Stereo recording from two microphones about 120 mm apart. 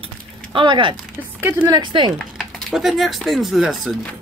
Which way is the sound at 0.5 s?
40° right (ahead or behind).